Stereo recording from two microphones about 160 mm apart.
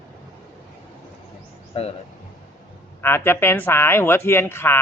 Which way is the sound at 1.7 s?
40° left (ahead or behind).